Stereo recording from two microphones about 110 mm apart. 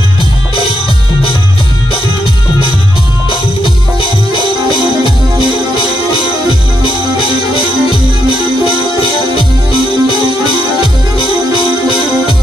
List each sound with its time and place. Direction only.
3.6 s music: 55° left (ahead or behind)
9.0 s music: 55° left (ahead or behind)